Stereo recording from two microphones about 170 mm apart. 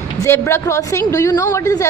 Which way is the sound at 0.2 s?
15° left (ahead or behind).